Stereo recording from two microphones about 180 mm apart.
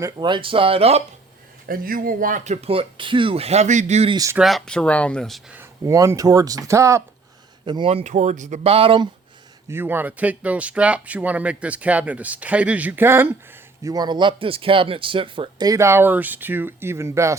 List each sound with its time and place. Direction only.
0.0 s speech: 25° right (ahead or behind)
1.6 s speech: 55° right (ahead or behind); by 4.1 s 40° right (ahead or behind)
4.1 s speech: 20° right (ahead or behind)
4.4 s speech: centre (ahead or behind)
5.5 s speech: 20° right (ahead or behind)
7.6 s speech: 25° right (ahead or behind)
9.6 s speech: 10° right (ahead or behind)